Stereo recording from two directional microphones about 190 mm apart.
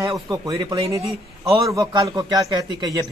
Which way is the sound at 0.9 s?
15° right (ahead or behind).